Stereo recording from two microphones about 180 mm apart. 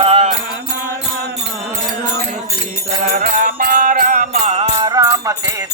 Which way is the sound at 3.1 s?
50° right (ahead or behind).